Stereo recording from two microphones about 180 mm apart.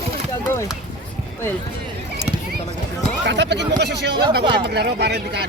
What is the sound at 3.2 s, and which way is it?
Speech, 80° right.